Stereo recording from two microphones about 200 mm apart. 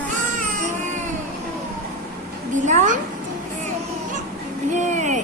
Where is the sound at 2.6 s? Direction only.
35° right (ahead or behind).